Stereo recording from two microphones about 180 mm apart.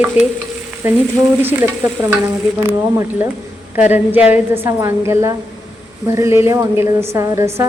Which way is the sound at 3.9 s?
10° right (ahead or behind).